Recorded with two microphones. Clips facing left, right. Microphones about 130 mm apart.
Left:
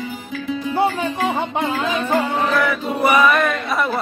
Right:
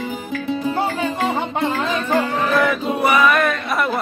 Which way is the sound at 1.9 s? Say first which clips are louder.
Left 1 dB; 10° left (ahead or behind).